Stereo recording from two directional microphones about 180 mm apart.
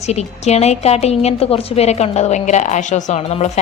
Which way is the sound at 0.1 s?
35° left (ahead or behind).